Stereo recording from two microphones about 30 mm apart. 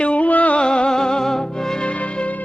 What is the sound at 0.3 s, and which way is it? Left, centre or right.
Music, left.